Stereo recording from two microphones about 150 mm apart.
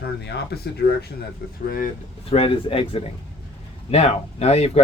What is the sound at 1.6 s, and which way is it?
Speech, 70° left (ahead or behind).